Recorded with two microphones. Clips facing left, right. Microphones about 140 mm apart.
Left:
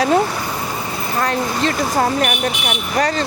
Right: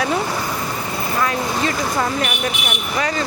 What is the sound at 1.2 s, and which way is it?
Speech, 40° left (ahead or behind).